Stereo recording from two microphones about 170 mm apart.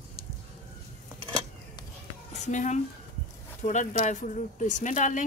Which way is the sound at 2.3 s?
45° left (ahead or behind).